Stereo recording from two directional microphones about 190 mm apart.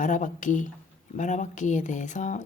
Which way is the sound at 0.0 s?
40° left (ahead or behind).